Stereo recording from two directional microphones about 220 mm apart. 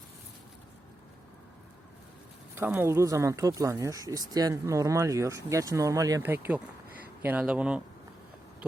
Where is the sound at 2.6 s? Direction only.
10° right (ahead or behind).